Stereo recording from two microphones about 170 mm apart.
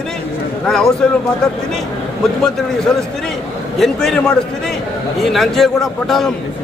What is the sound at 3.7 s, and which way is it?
Speech, centre (ahead or behind).